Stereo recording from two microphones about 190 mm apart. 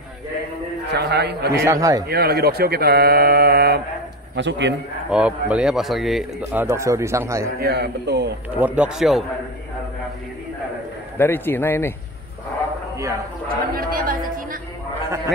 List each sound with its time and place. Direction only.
0.9 s a man's voice: 60° right (ahead or behind)
1.5 s a man's voice: 15° right (ahead or behind)
2.0 s speech: 55° right (ahead or behind)
4.4 s a man's voice: 70° right (ahead or behind)
5.1 s a man's voice: 5° right (ahead or behind)
7.6 s a man's voice: 60° right (ahead or behind)
8.5 s speech: 5° right (ahead or behind)
11.1 s a man's voice: 10° left (ahead or behind)
12.9 s a man's voice: 15° right (ahead or behind)
13.7 s a woman's voice: 50° right (ahead or behind)